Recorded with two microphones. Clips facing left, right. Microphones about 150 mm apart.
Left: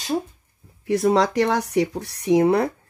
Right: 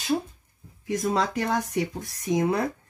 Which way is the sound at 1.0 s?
75° left (ahead or behind).